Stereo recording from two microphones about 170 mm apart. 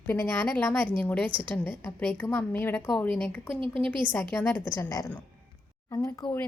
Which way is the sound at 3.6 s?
30° right (ahead or behind).